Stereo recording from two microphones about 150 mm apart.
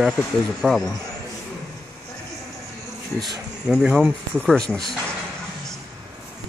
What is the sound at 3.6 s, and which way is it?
Speech, 5° right (ahead or behind).